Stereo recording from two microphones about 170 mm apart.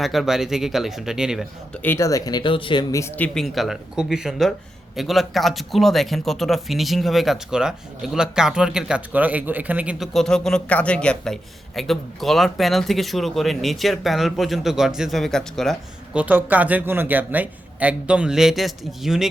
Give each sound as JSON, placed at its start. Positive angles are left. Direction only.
{"t": 0.0, "sound": "speech", "side_deg": 0}
{"t": 1.8, "sound": "speech", "side_deg": 15}
{"t": 2.9, "sound": "speech", "side_deg": 15}
{"t": 16.2, "sound": "a man's voice", "side_deg": -10}